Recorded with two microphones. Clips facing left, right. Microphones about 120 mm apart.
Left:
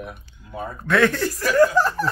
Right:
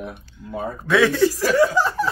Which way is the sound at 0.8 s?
5° right (ahead or behind).